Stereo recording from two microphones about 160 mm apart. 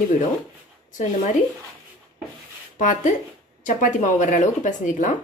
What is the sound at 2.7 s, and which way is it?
Speech, 50° left (ahead or behind).